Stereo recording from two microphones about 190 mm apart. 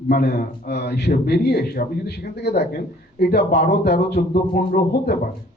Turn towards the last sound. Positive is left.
turn(degrees=50)  # may be behind; listen again after turning